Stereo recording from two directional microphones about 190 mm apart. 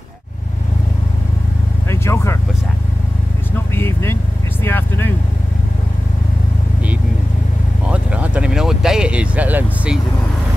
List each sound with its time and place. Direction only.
1.9 s vehicle: 15° left (ahead or behind)
3.5 s vehicle: 10° left (ahead or behind)
7.9 s vehicle: 5° right (ahead or behind)